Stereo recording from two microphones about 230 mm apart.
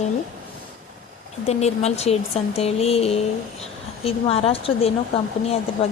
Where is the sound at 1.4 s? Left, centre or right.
Left.